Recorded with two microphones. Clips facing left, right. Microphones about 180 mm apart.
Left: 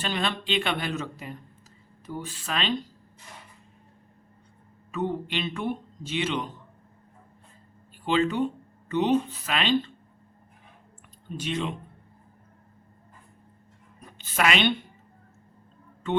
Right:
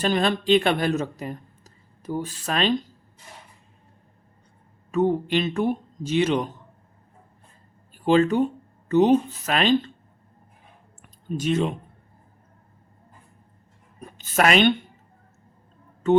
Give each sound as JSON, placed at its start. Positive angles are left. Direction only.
{"t": 0.0, "sound": "speech", "side_deg": -40}
{"t": 4.9, "sound": "speech", "side_deg": -40}
{"t": 8.0, "sound": "speech", "side_deg": -45}
{"t": 11.3, "sound": "speech", "side_deg": -45}
{"t": 14.0, "sound": "a woman's voice", "side_deg": -45}